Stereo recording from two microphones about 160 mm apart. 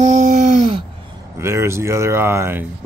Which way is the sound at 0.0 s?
45° right (ahead or behind).